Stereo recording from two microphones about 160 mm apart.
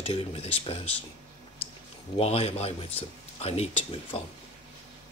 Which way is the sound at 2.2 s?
40° left (ahead or behind).